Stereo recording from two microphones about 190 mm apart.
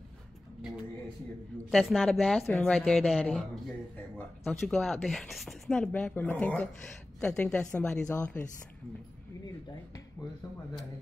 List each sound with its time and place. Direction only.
1.7 s speech: centre (ahead or behind)
10.2 s speech: 20° left (ahead or behind)